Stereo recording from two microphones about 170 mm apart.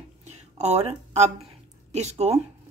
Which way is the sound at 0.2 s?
40° right (ahead or behind).